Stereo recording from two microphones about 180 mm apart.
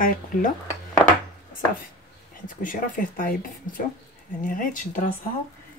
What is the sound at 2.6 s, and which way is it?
Speech, 50° left (ahead or behind).